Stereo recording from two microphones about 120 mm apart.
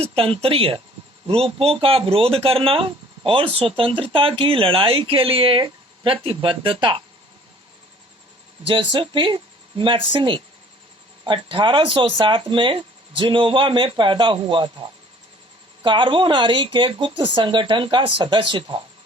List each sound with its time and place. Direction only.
0.0 s speech: 50° right (ahead or behind)
8.6 s speech: 45° right (ahead or behind)